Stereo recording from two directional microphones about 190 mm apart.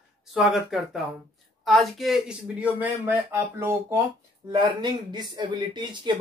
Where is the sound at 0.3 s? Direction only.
Centre (ahead or behind).